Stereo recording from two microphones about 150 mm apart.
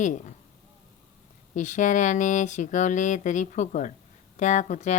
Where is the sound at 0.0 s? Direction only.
55° left (ahead or behind).